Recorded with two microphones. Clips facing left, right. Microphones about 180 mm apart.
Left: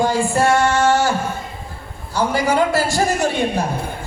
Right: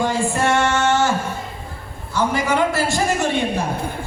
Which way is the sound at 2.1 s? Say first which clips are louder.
Left 2 dB; 35° left (ahead or behind).